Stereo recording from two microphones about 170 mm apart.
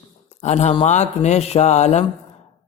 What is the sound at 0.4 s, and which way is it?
A man's voice, 45° left (ahead or behind).